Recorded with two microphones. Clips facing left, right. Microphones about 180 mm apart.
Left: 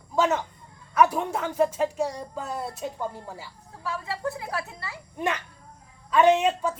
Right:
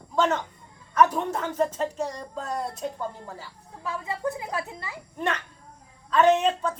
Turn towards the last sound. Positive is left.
turn(degrees=10)  # may be behind; listen again after turning